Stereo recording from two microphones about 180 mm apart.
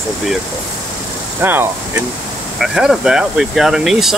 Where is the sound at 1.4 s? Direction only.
10° right (ahead or behind).